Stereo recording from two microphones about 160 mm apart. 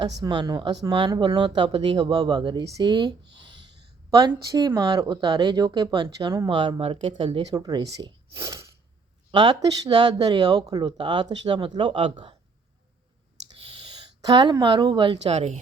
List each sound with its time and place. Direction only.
0.2 s speech: 25° right (ahead or behind)
4.4 s speech: 20° right (ahead or behind)
13.6 s a sound: 35° right (ahead or behind)
14.2 s a woman's voice: 25° right (ahead or behind); by 15.5 s 40° right (ahead or behind)